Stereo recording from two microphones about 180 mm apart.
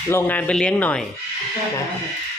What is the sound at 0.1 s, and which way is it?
Speech, 10° left (ahead or behind).